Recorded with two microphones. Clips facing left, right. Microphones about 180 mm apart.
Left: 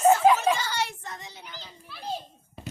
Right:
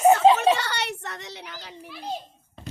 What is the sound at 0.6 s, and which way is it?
A child's voice, 70° right (ahead or behind).